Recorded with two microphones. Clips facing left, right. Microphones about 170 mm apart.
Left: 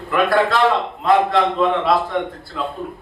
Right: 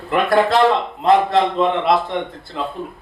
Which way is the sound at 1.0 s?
25° right (ahead or behind).